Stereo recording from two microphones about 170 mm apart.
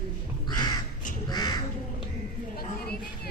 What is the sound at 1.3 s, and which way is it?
Crow, 25° left (ahead or behind).